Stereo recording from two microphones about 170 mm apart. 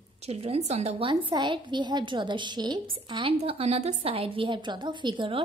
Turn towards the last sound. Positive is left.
turn(degrees=-30)  # may be behind; listen again after turning